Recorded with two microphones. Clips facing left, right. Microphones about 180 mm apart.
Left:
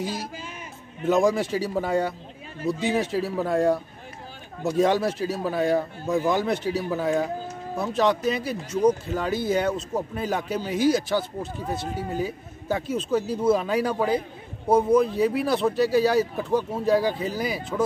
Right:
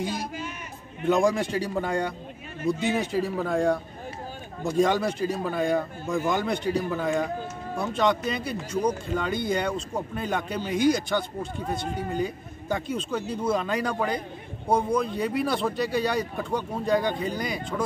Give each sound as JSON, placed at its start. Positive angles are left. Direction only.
{"t": 0.0, "sound": "speech", "side_deg": 5}